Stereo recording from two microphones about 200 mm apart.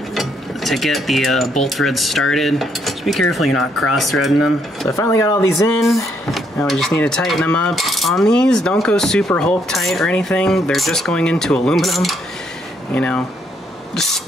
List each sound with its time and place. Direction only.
0.1 s mechanisms: centre (ahead or behind)
4.8 s speech: 15° left (ahead or behind)
6.3 s mechanisms: centre (ahead or behind)